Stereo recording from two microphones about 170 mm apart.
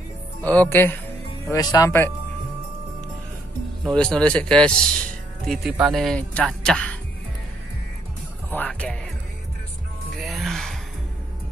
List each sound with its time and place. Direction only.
0.5 s speech: 10° left (ahead or behind)
3.8 s speech: 5° left (ahead or behind)
8.5 s speech: 5° left (ahead or behind)
10.2 s gasp: centre (ahead or behind)